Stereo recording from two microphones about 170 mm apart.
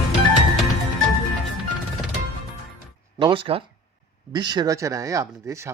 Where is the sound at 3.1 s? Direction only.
30° right (ahead or behind).